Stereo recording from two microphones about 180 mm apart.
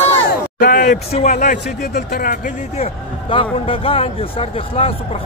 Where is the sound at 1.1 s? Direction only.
40° left (ahead or behind).